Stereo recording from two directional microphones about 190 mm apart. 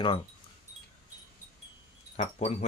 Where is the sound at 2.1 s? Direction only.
35° left (ahead or behind).